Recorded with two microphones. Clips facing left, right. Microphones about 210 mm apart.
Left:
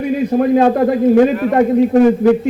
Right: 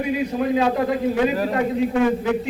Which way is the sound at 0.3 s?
50° left (ahead or behind).